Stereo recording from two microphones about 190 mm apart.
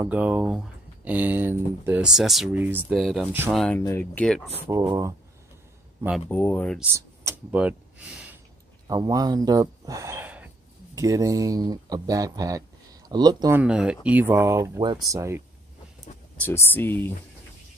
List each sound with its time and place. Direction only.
0.0 s speech: 10° right (ahead or behind)
4.6 s speech: 15° right (ahead or behind)
6.2 s speech: 10° left (ahead or behind)
6.8 s speech: 10° right (ahead or behind)
8.8 s speech: 20° right (ahead or behind)
13.6 s speech: 5° right (ahead or behind)
16.3 s speech: 10° left (ahead or behind)